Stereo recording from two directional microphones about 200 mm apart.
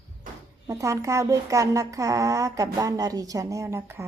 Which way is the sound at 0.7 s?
15° right (ahead or behind).